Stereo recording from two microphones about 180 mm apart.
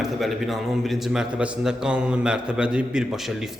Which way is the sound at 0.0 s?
Centre (ahead or behind).